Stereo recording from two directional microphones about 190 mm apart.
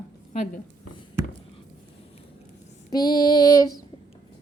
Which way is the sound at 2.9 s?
20° left (ahead or behind).